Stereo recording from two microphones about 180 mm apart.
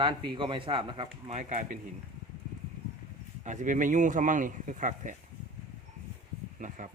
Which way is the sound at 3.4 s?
40° right (ahead or behind).